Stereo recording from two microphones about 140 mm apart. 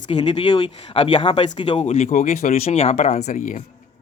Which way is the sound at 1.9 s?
60° left (ahead or behind).